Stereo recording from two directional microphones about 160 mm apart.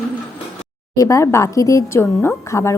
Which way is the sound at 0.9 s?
20° left (ahead or behind).